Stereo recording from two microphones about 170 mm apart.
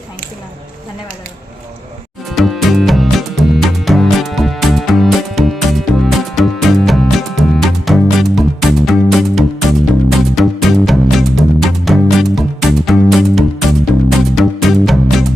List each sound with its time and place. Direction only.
2.3 s music: centre (ahead or behind)